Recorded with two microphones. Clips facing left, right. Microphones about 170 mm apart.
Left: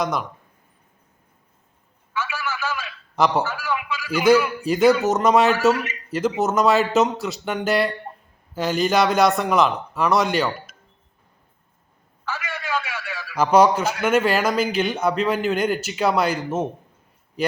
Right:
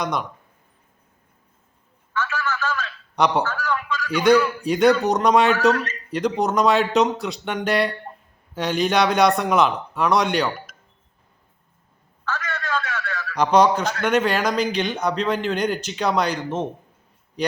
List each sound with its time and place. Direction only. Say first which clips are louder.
0.0 s a man's voice: left 1 dB; centre (ahead or behind)
2.1 s telephone: right 2 dB; 10° left (ahead or behind)
3.5 s a man's voice: right 1 dB; 10° left (ahead or behind)
12.2 s a man's voice: right 1 dB; 10° left (ahead or behind)